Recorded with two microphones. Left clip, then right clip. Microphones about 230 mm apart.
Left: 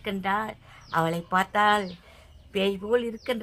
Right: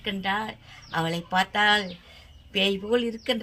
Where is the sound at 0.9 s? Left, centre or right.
Left.